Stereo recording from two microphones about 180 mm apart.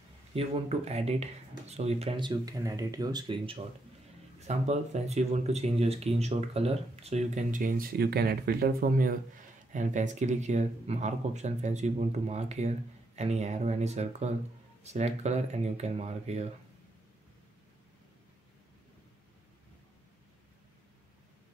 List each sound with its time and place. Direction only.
0.3 s speech: 35° right (ahead or behind)